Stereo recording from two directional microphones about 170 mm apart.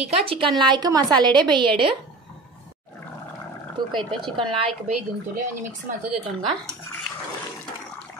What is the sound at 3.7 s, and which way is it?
Speech, 30° right (ahead or behind).